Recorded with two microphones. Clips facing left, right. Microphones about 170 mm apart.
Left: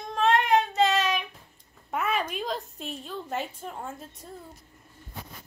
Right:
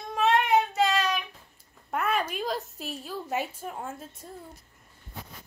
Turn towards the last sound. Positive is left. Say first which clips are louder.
# right 1 dB
turn(degrees=0)  # may be behind; listen again after turning